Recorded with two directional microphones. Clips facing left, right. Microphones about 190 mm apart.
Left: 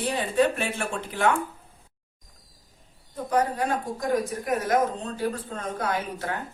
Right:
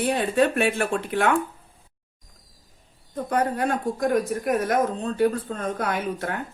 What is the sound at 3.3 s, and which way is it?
Speech, 60° right (ahead or behind).